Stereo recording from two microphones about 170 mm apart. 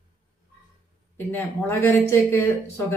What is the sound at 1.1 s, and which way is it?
Speech, 10° left (ahead or behind).